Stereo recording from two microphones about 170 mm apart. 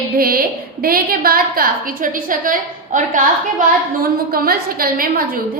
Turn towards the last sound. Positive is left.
turn(degrees=-60)  # may be behind; listen again after turning